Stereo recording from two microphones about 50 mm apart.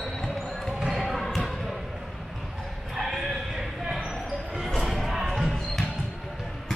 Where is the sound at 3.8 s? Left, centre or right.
Centre.